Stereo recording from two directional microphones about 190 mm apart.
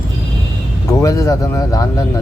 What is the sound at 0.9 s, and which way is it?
Speech, 15° left (ahead or behind).